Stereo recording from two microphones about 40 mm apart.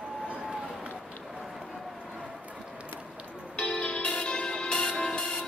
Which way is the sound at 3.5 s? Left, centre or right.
Left.